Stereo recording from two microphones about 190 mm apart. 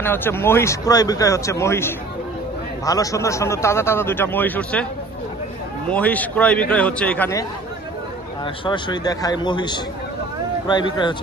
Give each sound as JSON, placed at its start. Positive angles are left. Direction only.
{"t": 0.0, "sound": "a man's voice", "side_deg": 10}
{"t": 5.9, "sound": "a man's voice", "side_deg": 5}
{"t": 8.6, "sound": "speech", "side_deg": 25}